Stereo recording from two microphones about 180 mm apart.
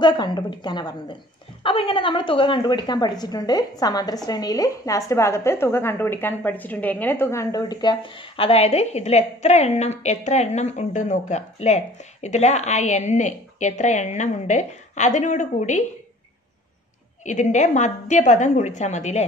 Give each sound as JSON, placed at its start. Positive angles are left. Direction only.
{"t": 0.0, "sound": "a woman's voice", "side_deg": 25}
{"t": 17.2, "sound": "a woman's voice", "side_deg": 40}